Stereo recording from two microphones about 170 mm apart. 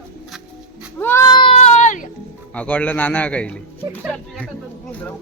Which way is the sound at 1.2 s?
30° left (ahead or behind).